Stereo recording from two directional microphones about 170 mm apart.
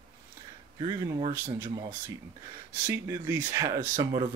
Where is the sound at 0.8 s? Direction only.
25° right (ahead or behind).